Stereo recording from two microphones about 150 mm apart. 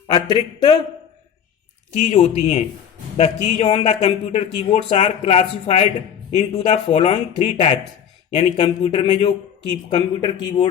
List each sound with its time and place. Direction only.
0.1 s a man's voice: 30° left (ahead or behind)
2.0 s a man's voice: 45° left (ahead or behind)
9.9 s speech: 30° left (ahead or behind)